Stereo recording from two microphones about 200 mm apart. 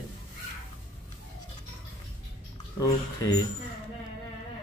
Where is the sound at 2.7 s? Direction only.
15° left (ahead or behind).